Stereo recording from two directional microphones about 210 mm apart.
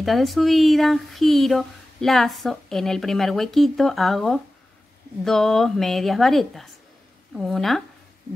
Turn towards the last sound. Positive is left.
turn(degrees=0)  # may be behind; listen again after turning